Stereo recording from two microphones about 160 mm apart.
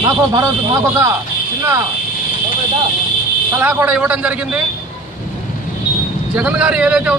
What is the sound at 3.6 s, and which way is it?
Speech, 10° right (ahead or behind).